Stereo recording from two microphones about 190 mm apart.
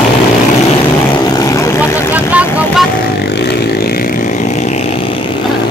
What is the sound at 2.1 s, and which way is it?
Vehicle, 5° right (ahead or behind).